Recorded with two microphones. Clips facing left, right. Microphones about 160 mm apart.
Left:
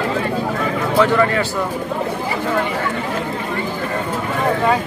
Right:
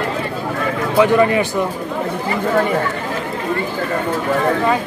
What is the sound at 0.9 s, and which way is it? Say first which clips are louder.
Speech: right 3 dB; 15° right (ahead or behind).